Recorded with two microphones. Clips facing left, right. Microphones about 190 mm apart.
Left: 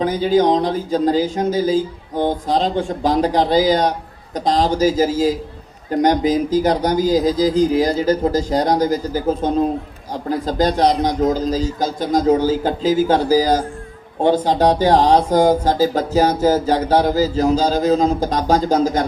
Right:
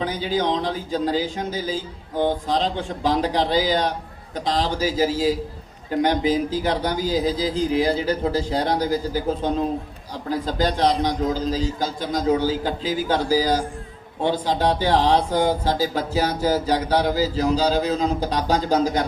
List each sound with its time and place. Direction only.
0.0 s speech: 45° left (ahead or behind)